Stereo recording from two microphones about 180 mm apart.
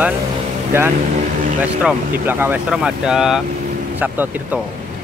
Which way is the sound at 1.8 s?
10° right (ahead or behind).